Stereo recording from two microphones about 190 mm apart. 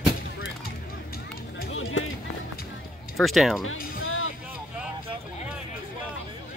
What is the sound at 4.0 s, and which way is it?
Music, 90° left.